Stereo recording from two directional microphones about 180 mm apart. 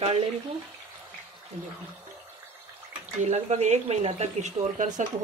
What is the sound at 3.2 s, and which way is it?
A woman's voice, 40° right (ahead or behind).